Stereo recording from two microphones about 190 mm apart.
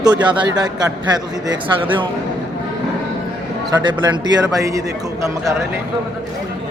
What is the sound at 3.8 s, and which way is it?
A man's voice, 25° right (ahead or behind).